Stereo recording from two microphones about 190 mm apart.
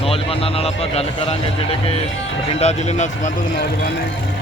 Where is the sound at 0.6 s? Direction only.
35° left (ahead or behind).